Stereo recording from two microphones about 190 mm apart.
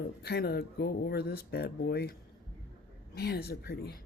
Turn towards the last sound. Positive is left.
turn(degrees=55)  # may be behind; listen again after turning